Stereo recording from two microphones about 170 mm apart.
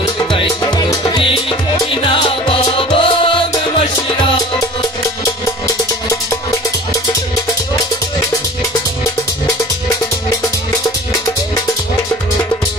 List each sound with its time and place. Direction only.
0.2 s music: 25° left (ahead or behind)